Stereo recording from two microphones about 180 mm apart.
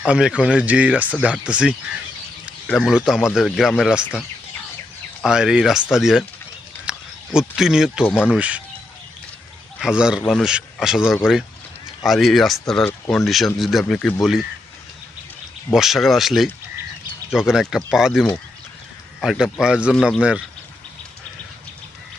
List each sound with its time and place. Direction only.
0.0 s speech: 5° right (ahead or behind)
5.2 s speech: 5° right (ahead or behind)
9.7 s speech: 5° right (ahead or behind)
15.7 s speech: centre (ahead or behind)